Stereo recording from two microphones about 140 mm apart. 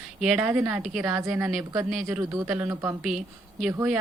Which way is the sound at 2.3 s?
20° right (ahead or behind).